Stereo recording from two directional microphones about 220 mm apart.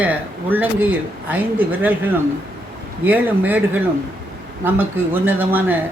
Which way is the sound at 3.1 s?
10° right (ahead or behind).